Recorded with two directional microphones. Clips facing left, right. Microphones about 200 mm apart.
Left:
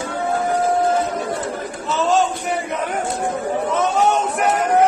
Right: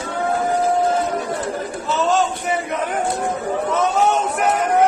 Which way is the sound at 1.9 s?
Centre (ahead or behind).